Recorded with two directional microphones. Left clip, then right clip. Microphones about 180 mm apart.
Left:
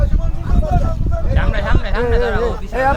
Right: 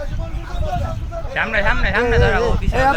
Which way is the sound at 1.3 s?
30° right (ahead or behind).